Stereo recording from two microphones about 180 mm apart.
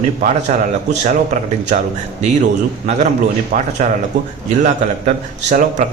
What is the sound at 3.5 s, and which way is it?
A man's voice, 45° right (ahead or behind).